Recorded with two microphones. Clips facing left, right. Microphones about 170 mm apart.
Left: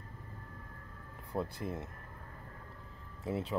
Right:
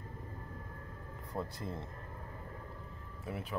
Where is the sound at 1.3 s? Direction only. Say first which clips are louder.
Left 3 dB; 15° left (ahead or behind).